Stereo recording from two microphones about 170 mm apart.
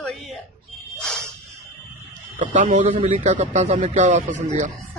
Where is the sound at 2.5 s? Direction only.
45° right (ahead or behind).